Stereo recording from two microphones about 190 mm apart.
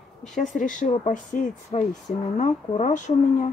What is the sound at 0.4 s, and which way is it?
Speech, 40° left (ahead or behind).